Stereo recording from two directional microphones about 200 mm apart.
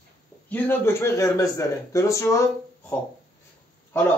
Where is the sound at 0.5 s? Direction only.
10° left (ahead or behind).